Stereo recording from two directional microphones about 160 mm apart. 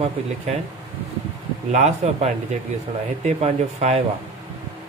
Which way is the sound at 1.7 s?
45° right (ahead or behind).